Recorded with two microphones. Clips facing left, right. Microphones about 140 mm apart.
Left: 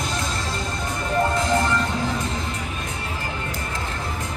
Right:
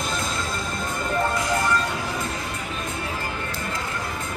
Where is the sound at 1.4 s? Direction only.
30° left (ahead or behind).